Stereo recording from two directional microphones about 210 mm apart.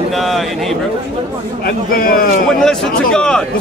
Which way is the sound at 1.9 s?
45° left (ahead or behind).